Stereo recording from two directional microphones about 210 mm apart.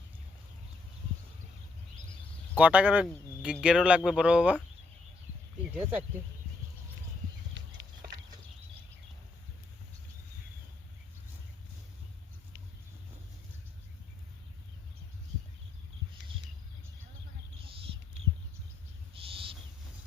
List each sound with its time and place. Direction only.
2.6 s speech: 5° right (ahead or behind)
5.6 s speech: 5° right (ahead or behind)
19.1 s owl: 25° right (ahead or behind)